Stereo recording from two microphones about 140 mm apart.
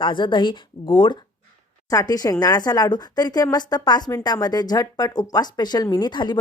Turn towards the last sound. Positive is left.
turn(degrees=30)  # may be behind; listen again after turning